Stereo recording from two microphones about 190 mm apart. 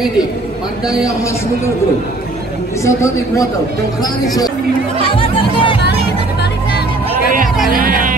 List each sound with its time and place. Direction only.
2.8 s a woman's voice: 15° left (ahead or behind)
5.1 s speech: 25° left (ahead or behind)
7.7 s speech: 45° right (ahead or behind)